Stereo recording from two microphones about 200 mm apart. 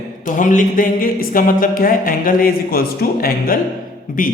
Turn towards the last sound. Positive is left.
turn(degrees=45)  # may be behind; listen again after turning